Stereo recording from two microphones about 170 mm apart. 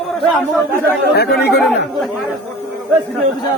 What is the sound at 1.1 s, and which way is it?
Speech, 70° left (ahead or behind).